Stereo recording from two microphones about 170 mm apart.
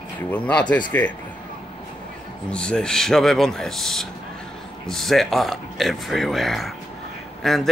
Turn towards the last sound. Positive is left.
turn(degrees=0)  # may be behind; listen again after turning